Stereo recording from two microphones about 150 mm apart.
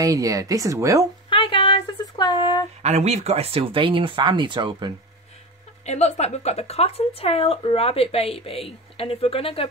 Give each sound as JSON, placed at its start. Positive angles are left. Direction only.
{"t": 0.0, "sound": "speech", "side_deg": -25}
{"t": 1.3, "sound": "a sound", "side_deg": 35}
{"t": 2.8, "sound": "speech", "side_deg": -50}
{"t": 5.9, "sound": "speech", "side_deg": 45}